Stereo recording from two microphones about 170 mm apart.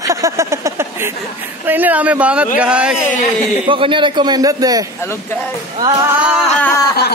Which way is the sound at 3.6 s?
30° right (ahead or behind).